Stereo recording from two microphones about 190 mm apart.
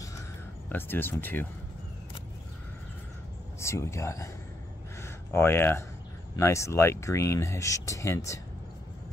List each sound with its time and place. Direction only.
0.7 s speech: 10° left (ahead or behind)
3.5 s speech: 15° left (ahead or behind)